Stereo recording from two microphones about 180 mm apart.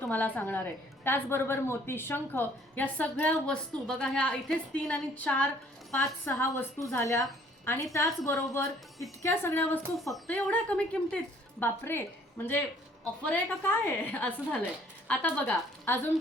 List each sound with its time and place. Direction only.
0.0 s a woman's voice: 10° left (ahead or behind)
10.0 s a woman's voice: centre (ahead or behind)